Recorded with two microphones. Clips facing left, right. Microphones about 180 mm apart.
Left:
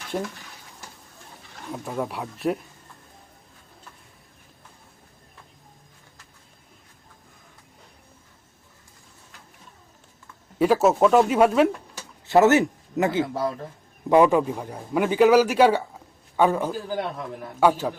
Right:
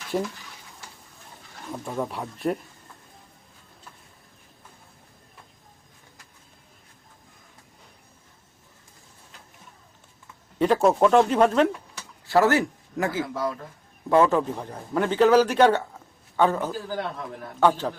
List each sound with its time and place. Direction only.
1.7 s speech: 5° left (ahead or behind)
10.6 s a man's voice: 5° left (ahead or behind)
12.2 s speech: 20° left (ahead or behind)
14.1 s a man's voice: 15° left (ahead or behind)